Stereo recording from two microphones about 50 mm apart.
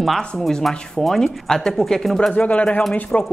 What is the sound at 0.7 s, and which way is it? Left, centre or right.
Speech, centre.